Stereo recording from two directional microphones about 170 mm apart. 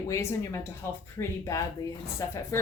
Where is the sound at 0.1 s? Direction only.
15° left (ahead or behind).